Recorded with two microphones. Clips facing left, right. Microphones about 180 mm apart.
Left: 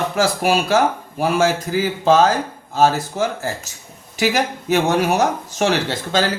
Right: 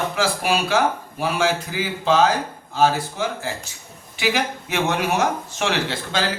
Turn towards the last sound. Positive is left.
turn(degrees=40)  # may be behind; listen again after turning